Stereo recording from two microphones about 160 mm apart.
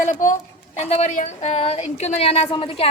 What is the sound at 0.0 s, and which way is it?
A woman's voice, 55° left (ahead or behind).